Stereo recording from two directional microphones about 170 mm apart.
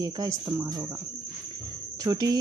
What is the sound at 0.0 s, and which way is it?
Speech, 20° right (ahead or behind).